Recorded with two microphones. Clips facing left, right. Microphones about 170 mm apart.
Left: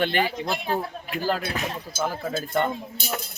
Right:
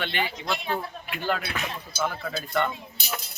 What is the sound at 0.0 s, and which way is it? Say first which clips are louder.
Speech: left 6 dB; 45° left (ahead or behind).